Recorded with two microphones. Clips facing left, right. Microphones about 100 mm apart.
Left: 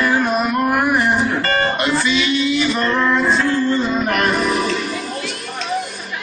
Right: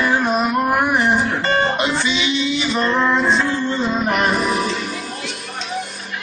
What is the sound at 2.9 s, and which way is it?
Female singing, 15° right (ahead or behind).